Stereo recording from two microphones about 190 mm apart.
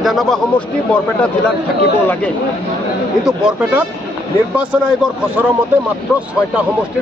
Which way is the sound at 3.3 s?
5° right (ahead or behind).